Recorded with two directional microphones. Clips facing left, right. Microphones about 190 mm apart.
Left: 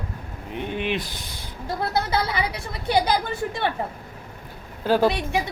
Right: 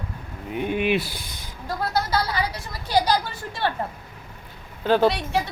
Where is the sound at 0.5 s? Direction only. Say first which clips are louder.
Right 4 dB; 10° right (ahead or behind).